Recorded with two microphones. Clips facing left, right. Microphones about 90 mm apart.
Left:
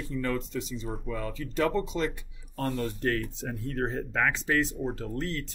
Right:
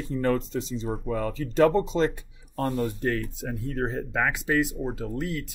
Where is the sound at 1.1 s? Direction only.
45° right (ahead or behind).